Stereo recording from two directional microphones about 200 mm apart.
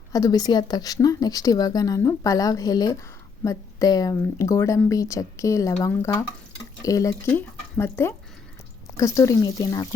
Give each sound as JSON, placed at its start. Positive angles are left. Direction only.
{"t": 0.1, "sound": "a woman's voice", "side_deg": 20}